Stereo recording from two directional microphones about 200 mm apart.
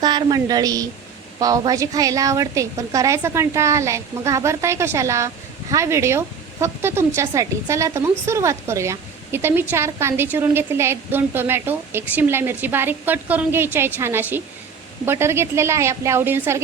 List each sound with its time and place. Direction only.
0.0 s a woman's voice: 20° right (ahead or behind)